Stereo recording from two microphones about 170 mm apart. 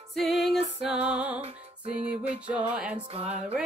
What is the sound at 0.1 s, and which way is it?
Music, centre (ahead or behind).